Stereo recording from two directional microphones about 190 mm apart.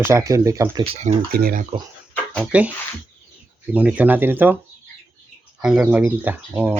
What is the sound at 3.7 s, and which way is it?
Speech, 10° right (ahead or behind).